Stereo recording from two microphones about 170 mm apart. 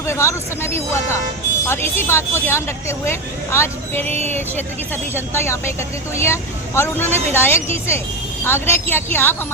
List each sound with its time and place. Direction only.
0.0 s speech: 15° left (ahead or behind)